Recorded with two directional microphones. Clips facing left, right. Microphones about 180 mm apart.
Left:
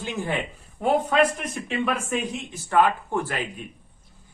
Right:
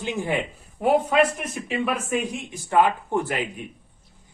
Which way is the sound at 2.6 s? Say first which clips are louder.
Right 1 dB; 15° right (ahead or behind).